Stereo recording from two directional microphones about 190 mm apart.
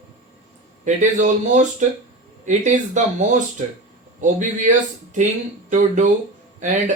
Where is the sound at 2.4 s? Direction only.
40° right (ahead or behind).